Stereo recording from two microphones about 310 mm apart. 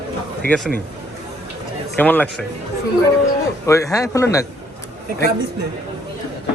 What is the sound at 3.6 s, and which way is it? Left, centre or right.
Speech, centre.